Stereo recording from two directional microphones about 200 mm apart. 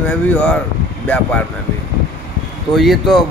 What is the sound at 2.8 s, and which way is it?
Speech, centre (ahead or behind).